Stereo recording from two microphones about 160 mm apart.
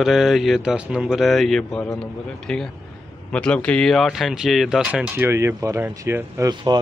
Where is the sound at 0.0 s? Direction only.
5° right (ahead or behind).